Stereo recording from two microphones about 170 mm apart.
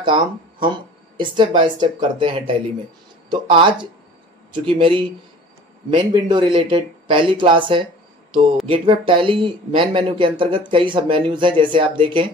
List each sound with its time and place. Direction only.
0.0 s speech: 30° right (ahead or behind)